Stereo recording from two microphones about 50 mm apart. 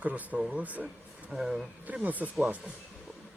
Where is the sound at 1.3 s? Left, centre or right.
Centre.